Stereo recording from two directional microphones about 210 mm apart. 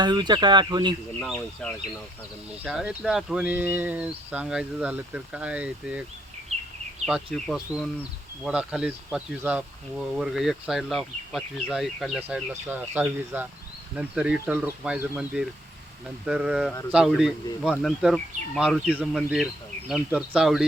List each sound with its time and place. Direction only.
0.0 s speech: 20° right (ahead or behind)
1.2 s speech: 5° left (ahead or behind)